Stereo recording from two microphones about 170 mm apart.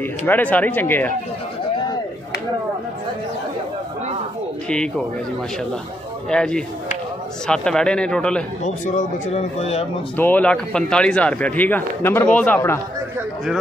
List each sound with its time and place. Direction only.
0.0 s a man's voice: 10° left (ahead or behind)
4.6 s a man's voice: 5° left (ahead or behind)
6.3 s a man's voice: 5° left (ahead or behind)
8.6 s speech: 45° left (ahead or behind)
10.1 s a man's voice: 10° left (ahead or behind)